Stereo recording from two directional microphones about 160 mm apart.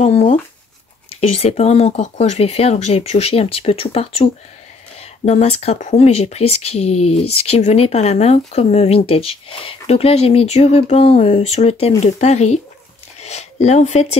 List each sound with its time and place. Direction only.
0.0 s speech: 45° left (ahead or behind)